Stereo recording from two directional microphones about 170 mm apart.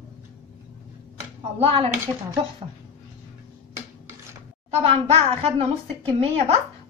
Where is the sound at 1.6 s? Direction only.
35° right (ahead or behind).